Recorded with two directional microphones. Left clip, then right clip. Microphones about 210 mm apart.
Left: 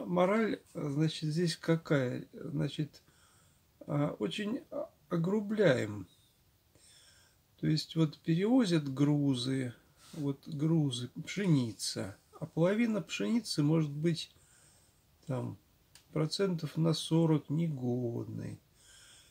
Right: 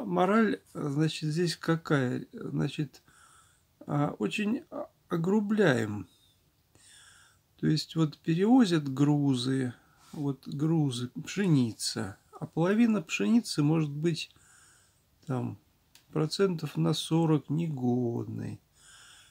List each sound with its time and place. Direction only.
0.1 s speech: 35° right (ahead or behind)
7.6 s speech: 35° right (ahead or behind)
16.1 s speech: 35° right (ahead or behind)